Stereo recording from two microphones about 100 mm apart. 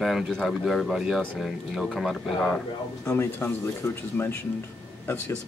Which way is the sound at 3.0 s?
25° left (ahead or behind).